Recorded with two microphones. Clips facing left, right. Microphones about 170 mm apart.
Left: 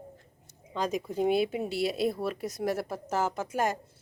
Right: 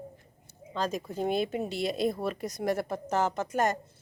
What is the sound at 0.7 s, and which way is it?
Speech, 15° left (ahead or behind).